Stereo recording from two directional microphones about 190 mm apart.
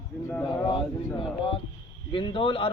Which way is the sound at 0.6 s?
25° left (ahead or behind).